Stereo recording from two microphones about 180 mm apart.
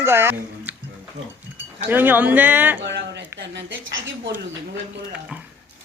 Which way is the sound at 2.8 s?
75° right (ahead or behind).